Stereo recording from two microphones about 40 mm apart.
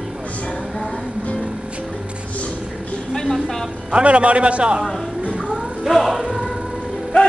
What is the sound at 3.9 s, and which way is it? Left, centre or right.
Speech, right.